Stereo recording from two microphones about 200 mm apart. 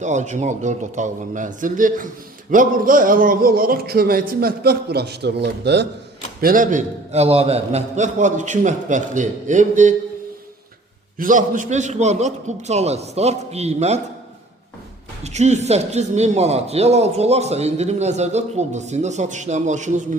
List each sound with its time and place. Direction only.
0.0 s a man's voice: 35° right (ahead or behind); by 5.9 s 60° right (ahead or behind)
6.4 s speech: 45° right (ahead or behind)
11.2 s speech: 40° right (ahead or behind)
15.2 s speech: 35° right (ahead or behind)